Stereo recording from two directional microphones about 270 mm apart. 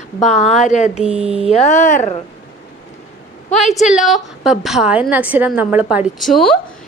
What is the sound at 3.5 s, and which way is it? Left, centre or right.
Speech, left.